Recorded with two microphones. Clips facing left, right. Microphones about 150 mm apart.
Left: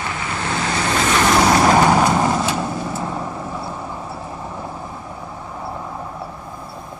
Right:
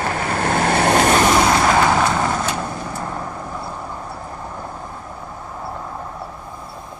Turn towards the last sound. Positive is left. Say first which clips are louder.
# left 1 dB
turn(degrees=0)  # may be behind; listen again after turning